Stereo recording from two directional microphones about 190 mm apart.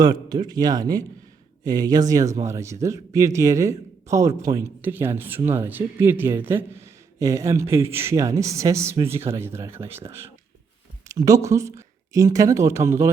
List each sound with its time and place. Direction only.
0.0 s a man's voice: 20° right (ahead or behind)
11.1 s a man's voice: 15° right (ahead or behind)